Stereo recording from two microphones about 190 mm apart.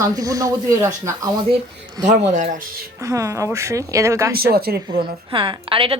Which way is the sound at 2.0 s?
40° right (ahead or behind).